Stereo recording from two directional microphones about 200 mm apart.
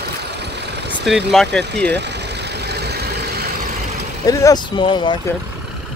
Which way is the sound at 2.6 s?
55° right (ahead or behind).